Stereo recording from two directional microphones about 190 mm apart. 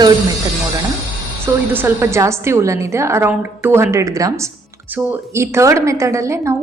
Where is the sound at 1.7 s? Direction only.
10° right (ahead or behind).